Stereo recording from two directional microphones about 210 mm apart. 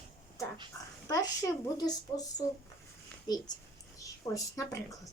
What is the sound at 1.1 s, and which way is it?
A woman's voice, 15° left (ahead or behind).